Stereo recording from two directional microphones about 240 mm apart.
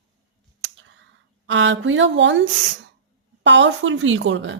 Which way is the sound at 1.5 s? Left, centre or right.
Right.